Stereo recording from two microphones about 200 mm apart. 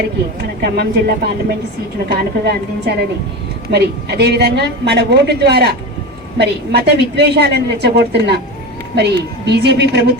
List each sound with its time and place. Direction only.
0.6 s a woman's voice: 50° right (ahead or behind)